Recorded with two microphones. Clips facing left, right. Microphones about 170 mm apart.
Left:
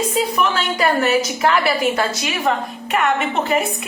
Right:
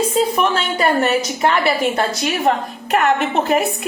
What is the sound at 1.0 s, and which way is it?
Speech, centre (ahead or behind).